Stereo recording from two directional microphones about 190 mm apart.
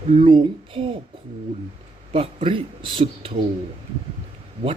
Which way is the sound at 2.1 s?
25° right (ahead or behind).